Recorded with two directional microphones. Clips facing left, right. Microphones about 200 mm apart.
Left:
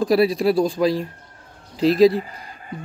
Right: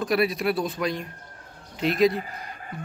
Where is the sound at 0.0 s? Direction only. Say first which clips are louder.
Left 6 dB; 30° left (ahead or behind).